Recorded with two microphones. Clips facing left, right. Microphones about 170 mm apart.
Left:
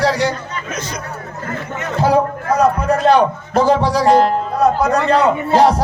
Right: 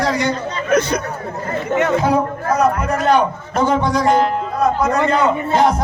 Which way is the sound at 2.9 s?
30° left (ahead or behind).